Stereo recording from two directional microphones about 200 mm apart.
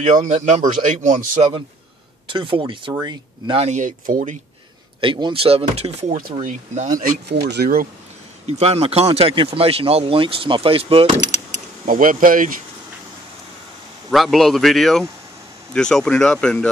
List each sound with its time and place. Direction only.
0.0 s speech: 35° right (ahead or behind)
5.0 s speech: 25° right (ahead or behind); by 7.2 s 40° right (ahead or behind)
7.2 s speech: 55° right (ahead or behind)
8.5 s speech: 30° right (ahead or behind)
14.1 s a man's voice: centre (ahead or behind)